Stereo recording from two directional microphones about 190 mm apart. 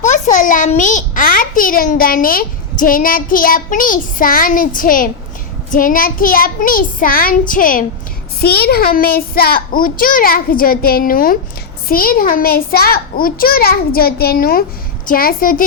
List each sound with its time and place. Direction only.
0.3 s a child's voice: 45° left (ahead or behind)